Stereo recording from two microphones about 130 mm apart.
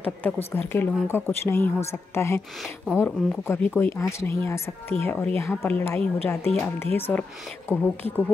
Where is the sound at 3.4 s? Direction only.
15° left (ahead or behind).